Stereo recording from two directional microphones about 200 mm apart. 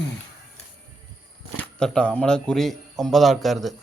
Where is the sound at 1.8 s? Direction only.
5° left (ahead or behind).